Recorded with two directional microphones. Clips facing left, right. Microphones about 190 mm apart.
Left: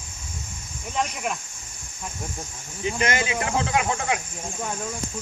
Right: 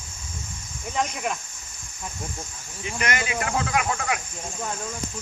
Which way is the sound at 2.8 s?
25° left (ahead or behind).